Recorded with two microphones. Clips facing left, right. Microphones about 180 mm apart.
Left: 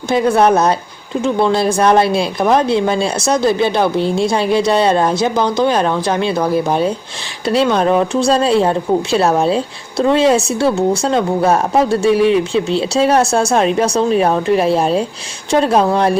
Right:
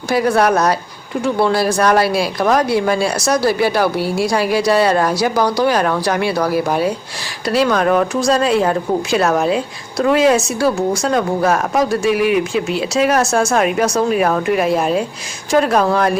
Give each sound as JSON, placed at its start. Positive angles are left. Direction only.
{"t": 0.1, "sound": "a woman's voice", "side_deg": 25}